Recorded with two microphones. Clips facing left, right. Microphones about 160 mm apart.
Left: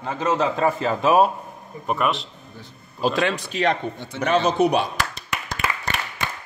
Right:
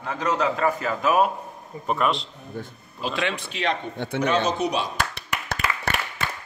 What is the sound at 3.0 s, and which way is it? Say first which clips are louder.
Speech: left 5 dB; 40° left (ahead or behind).